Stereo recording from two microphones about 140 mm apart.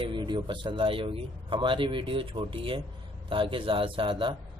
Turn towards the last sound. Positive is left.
turn(degrees=-35)  # may be behind; listen again after turning